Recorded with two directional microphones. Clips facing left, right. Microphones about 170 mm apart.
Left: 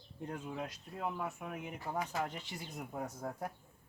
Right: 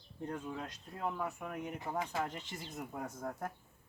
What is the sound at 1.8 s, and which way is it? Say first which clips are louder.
Speech: left 1 dB; 25° right (ahead or behind).